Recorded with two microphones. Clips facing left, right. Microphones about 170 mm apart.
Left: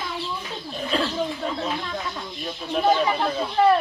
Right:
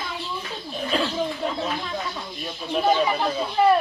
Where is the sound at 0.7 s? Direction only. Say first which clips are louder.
Even; 5° right (ahead or behind).